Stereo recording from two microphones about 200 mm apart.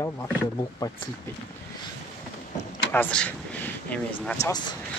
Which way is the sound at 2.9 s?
10° left (ahead or behind).